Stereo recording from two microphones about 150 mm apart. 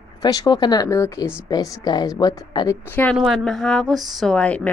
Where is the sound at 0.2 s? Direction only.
25° left (ahead or behind).